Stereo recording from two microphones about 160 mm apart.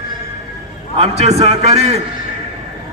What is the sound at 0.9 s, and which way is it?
A man's voice, 40° right (ahead or behind).